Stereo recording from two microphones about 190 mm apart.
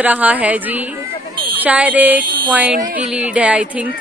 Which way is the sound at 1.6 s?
10° right (ahead or behind).